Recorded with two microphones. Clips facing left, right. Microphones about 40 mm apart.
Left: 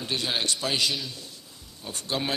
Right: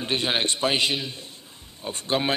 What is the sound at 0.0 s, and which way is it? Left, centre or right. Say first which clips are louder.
A man's voice: right 4 dB; right.